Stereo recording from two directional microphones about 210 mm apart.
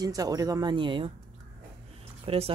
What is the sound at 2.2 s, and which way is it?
Speech, 30° right (ahead or behind).